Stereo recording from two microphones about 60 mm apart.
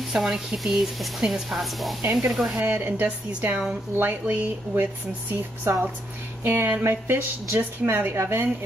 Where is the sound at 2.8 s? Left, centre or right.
Right.